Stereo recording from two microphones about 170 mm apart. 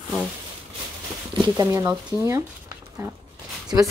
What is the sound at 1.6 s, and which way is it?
Speech, 20° right (ahead or behind).